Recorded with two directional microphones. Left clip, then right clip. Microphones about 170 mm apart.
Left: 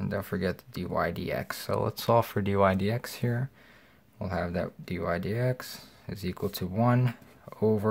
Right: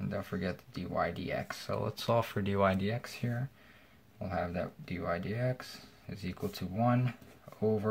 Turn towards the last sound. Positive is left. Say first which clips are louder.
# left 5 dB
turn(degrees=40)  # may be behind; listen again after turning